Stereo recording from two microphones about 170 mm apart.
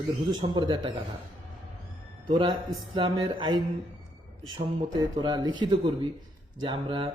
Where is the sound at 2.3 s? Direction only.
30° right (ahead or behind).